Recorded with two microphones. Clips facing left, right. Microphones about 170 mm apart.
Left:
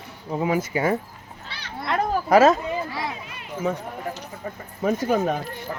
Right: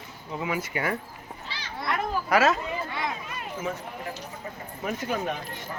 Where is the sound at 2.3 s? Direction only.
40° left (ahead or behind).